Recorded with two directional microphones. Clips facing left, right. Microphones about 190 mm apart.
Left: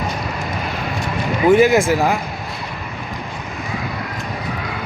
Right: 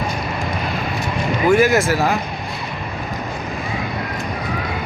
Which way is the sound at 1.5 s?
20° left (ahead or behind).